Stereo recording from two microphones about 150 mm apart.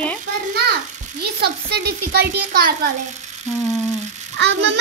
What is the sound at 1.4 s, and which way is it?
A child's voice, 90° right.